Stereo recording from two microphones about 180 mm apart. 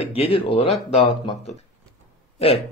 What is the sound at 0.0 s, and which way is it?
Speech, 35° left (ahead or behind).